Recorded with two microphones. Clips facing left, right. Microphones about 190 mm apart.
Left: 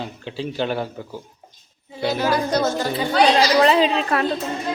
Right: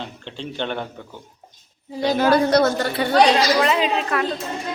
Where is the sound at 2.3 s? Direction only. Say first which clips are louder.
Right 4 dB; 70° right (ahead or behind).